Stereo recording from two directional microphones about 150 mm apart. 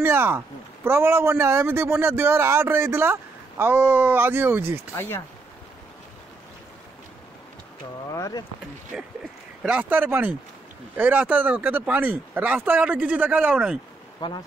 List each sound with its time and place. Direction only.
0.0 s a man's voice: 15° right (ahead or behind)
4.9 s speech: 15° left (ahead or behind)
8.1 s speech: 25° left (ahead or behind)
8.9 s a man's voice: centre (ahead or behind)
14.2 s speech: 25° left (ahead or behind)